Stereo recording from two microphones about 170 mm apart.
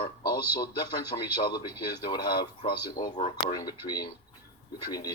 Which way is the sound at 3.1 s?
35° left (ahead or behind).